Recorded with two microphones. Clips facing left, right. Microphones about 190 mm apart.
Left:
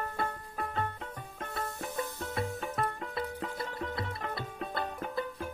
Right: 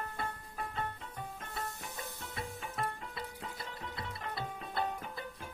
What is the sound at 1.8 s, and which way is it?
Music, 55° left (ahead or behind).